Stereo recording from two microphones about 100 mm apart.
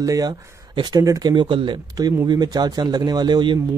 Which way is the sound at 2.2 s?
40° right (ahead or behind).